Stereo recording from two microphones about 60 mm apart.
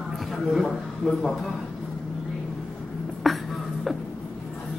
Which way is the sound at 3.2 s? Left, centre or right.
Centre.